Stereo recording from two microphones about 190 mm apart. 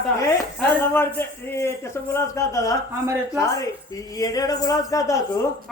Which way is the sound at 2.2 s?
15° left (ahead or behind).